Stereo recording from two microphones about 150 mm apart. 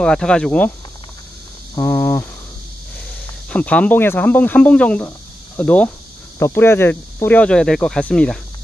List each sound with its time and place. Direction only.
0.0 s speech: 5° left (ahead or behind)
1.8 s cricket: 20° left (ahead or behind)
3.4 s speech: 10° left (ahead or behind)